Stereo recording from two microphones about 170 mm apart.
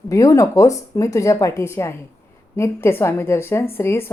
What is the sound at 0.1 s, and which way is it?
A woman's voice, 20° left (ahead or behind).